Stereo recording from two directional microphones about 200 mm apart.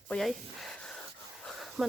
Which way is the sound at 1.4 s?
Centre (ahead or behind).